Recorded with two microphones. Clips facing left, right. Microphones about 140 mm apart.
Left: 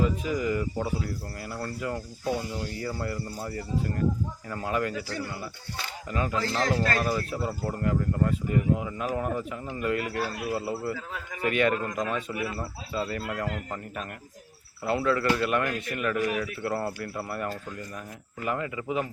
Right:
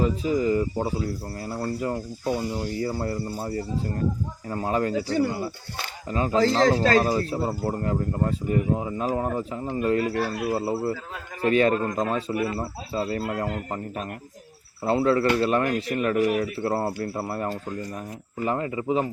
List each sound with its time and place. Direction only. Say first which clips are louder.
0.0 s speech: right 4 dB; 30° right (ahead or behind)